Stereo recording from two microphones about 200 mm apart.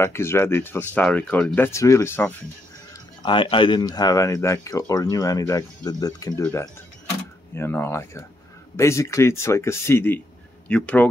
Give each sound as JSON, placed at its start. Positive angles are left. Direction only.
{"t": 0.0, "sound": "speech", "side_deg": 10}
{"t": 2.9, "sound": "speech", "side_deg": 25}